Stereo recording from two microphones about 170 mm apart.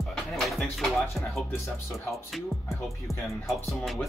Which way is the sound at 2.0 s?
Centre (ahead or behind).